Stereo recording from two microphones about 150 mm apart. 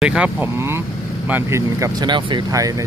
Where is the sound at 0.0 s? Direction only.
5° right (ahead or behind); by 2.7 s 25° right (ahead or behind).